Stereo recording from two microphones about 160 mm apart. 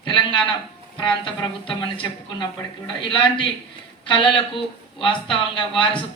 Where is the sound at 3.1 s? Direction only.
30° left (ahead or behind).